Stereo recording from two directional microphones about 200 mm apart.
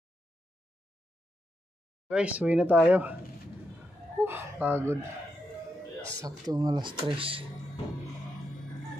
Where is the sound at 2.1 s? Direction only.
5° right (ahead or behind).